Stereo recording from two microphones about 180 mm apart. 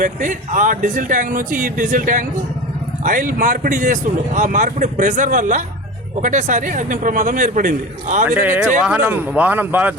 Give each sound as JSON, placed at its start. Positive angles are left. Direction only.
{"t": 0.0, "sound": "speech", "side_deg": -45}
{"t": 8.3, "sound": "speech", "side_deg": -10}